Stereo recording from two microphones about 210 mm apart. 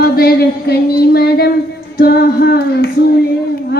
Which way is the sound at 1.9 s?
45° left (ahead or behind).